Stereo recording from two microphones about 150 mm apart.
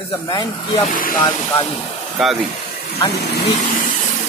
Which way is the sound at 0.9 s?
65° left (ahead or behind).